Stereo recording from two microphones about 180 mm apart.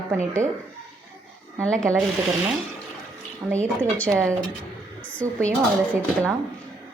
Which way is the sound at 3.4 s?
5° right (ahead or behind).